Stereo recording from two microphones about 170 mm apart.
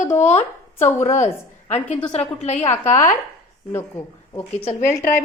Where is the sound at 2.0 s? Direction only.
40° left (ahead or behind).